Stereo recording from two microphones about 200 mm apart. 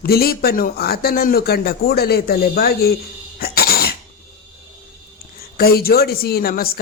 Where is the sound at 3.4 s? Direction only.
50° left (ahead or behind).